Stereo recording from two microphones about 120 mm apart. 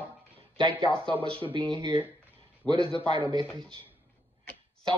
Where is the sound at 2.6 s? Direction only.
5° left (ahead or behind).